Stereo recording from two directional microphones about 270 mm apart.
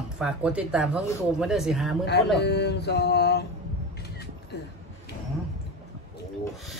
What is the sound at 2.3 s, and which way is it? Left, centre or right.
Mantra, left.